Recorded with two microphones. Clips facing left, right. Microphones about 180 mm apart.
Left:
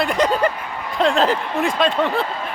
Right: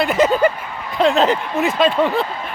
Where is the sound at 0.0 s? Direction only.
5° right (ahead or behind).